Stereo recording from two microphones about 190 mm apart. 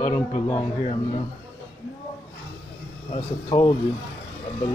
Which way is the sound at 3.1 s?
25° left (ahead or behind).